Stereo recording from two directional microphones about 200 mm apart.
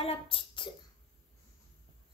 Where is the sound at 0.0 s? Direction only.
30° left (ahead or behind).